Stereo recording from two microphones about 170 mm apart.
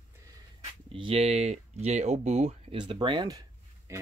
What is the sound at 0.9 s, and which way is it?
Speech, 30° right (ahead or behind).